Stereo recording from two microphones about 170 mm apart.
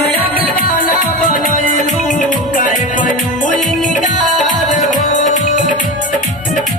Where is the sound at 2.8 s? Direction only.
50° left (ahead or behind).